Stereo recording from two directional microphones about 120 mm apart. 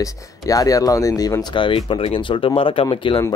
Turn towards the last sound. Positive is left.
turn(degrees=45)  # may be behind; listen again after turning